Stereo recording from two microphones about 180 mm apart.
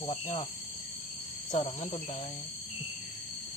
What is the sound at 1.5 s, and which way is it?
Speech, 40° left (ahead or behind).